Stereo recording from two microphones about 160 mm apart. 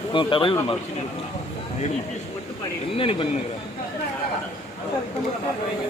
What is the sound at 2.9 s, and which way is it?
Speech, 35° left (ahead or behind).